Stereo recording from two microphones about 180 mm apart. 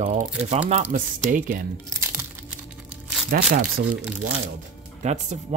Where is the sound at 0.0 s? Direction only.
40° right (ahead or behind).